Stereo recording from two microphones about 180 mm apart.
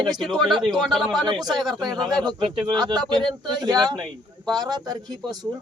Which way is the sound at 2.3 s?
25° right (ahead or behind).